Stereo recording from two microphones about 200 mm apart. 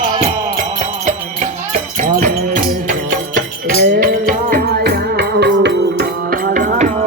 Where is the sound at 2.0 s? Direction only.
40° right (ahead or behind); by 6.1 s 55° right (ahead or behind).